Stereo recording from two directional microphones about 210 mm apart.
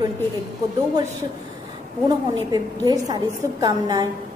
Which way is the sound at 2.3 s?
20° right (ahead or behind).